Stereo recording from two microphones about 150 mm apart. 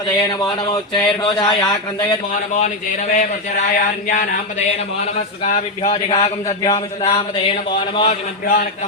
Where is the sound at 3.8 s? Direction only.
60° left (ahead or behind).